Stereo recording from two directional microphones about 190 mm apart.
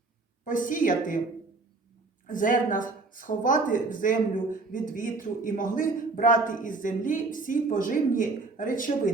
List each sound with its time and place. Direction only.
0.4 s a man's voice: 45° left (ahead or behind)
2.2 s a man's voice: 45° left (ahead or behind)